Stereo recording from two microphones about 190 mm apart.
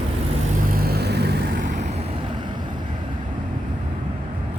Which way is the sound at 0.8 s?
55° right (ahead or behind).